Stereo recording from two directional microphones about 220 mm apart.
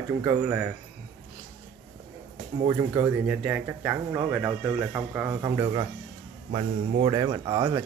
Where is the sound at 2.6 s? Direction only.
15° right (ahead or behind).